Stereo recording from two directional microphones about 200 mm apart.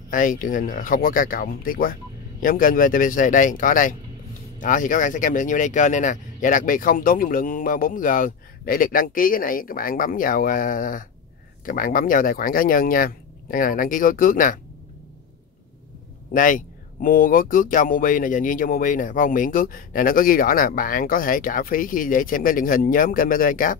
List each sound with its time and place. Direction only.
0.1 s speech: 40° left (ahead or behind)
16.3 s speech: 45° left (ahead or behind)